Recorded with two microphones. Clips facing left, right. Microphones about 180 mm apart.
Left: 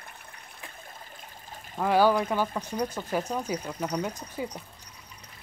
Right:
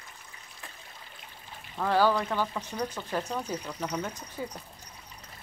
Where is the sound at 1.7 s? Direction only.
15° left (ahead or behind).